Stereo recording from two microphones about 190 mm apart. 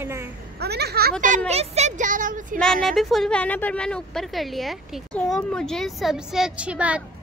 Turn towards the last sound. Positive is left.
turn(degrees=-5)  # may be behind; listen again after turning